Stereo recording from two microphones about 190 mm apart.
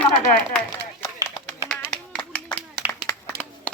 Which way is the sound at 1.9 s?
5° left (ahead or behind).